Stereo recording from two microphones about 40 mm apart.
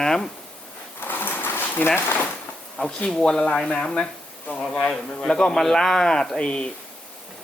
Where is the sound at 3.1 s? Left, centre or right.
Centre.